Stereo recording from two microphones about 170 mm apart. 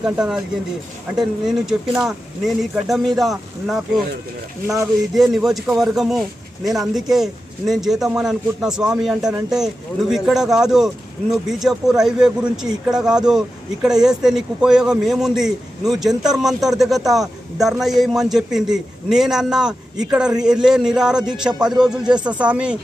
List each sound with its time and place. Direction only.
0.0 s a man's voice: 5° right (ahead or behind)
1.5 s a man's voice: 5° right (ahead or behind)
4.6 s speech: 15° right (ahead or behind)
5.1 s a man's voice: centre (ahead or behind)